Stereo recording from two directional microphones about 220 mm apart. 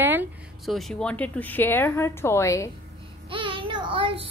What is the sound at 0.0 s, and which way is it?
Speech, 10° right (ahead or behind).